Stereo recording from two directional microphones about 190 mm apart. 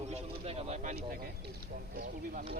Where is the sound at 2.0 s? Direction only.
45° right (ahead or behind).